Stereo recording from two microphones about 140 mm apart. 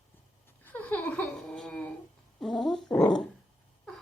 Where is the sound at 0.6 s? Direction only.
10° left (ahead or behind).